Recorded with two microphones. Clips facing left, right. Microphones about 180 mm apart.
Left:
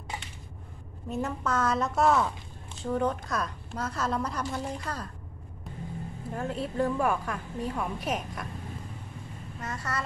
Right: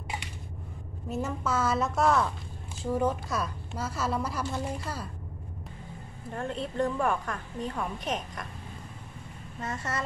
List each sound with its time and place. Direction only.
1.1 s a woman's voice: 5° right (ahead or behind)
6.3 s a woman's voice: 5° left (ahead or behind)
9.6 s speech: 25° right (ahead or behind)